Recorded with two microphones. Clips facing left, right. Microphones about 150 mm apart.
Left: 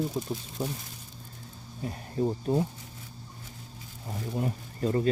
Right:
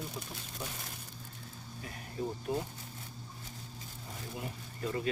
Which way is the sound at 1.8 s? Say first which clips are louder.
Left 9 dB; 35° left (ahead or behind).